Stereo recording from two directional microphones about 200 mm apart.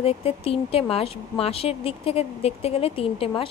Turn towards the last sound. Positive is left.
turn(degrees=25)  # may be behind; listen again after turning